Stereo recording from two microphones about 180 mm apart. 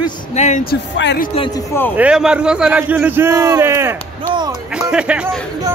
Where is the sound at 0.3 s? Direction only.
40° left (ahead or behind).